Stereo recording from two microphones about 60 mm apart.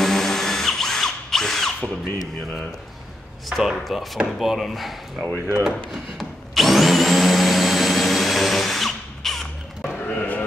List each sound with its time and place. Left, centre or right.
0.0 s drill: centre
3.4 s speech: centre
5.6 s speech: centre
6.1 s vacuum cleaner: centre
10.0 s a sound: left